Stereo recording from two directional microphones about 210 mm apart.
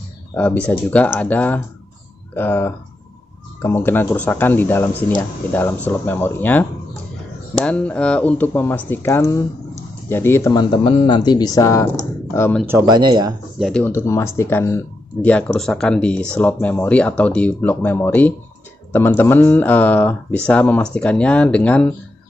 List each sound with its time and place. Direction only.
0.3 s speech: 5° left (ahead or behind)
12.6 s speech: 15° right (ahead or behind)
13.6 s speech: 5° left (ahead or behind)